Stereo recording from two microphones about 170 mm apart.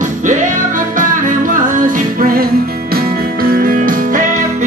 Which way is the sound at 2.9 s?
60° right (ahead or behind).